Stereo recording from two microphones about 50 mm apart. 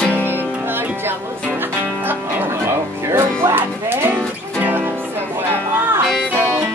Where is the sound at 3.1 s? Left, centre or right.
Right.